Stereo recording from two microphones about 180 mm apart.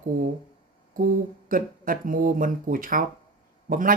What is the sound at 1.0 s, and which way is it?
Speech, 50° right (ahead or behind).